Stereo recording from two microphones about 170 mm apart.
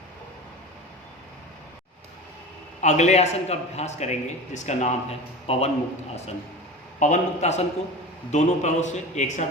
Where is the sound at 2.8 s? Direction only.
40° left (ahead or behind).